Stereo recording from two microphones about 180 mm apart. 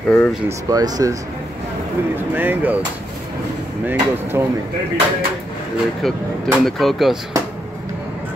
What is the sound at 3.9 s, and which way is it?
Speech, 10° right (ahead or behind).